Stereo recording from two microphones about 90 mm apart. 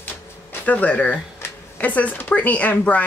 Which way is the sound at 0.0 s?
20° left (ahead or behind).